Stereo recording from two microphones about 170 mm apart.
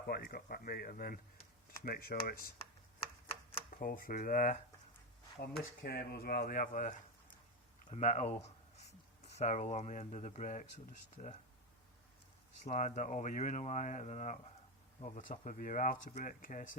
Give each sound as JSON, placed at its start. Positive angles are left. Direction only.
{"t": 0.1, "sound": "speech", "side_deg": 60}
{"t": 3.7, "sound": "speech", "side_deg": 55}
{"t": 5.8, "sound": "speech", "side_deg": 70}
{"t": 7.9, "sound": "speech", "side_deg": 40}
{"t": 8.4, "sound": "a sound", "side_deg": 40}
{"t": 9.4, "sound": "speech", "side_deg": 40}
{"t": 12.6, "sound": "speech", "side_deg": 45}